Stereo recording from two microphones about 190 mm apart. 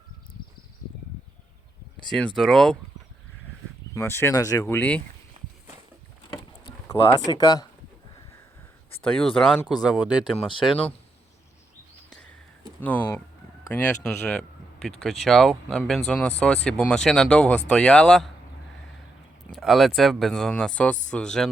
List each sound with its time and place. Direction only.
2.0 s speech: 5° left (ahead or behind)
3.9 s speech: 15° left (ahead or behind)
5.4 s walk: 35° right (ahead or behind)
6.3 s a sound: 20° left (ahead or behind)
9.1 s speech: 5° left (ahead or behind)
10.3 s speech: 25° left (ahead or behind)
12.8 s speech: 10° left (ahead or behind)
19.5 s speech: centre (ahead or behind)